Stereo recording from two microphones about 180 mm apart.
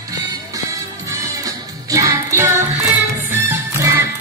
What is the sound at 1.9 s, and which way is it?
Music, 20° right (ahead or behind).